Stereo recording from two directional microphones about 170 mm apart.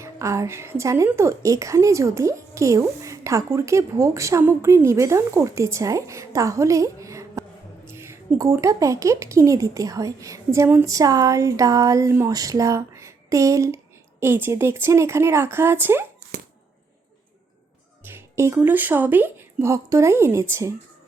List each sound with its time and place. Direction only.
0.0 s a woman's voice: 15° right (ahead or behind)
18.0 s speech: 15° right (ahead or behind)